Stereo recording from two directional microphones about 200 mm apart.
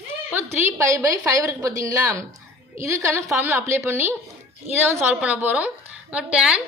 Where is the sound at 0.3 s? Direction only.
15° right (ahead or behind).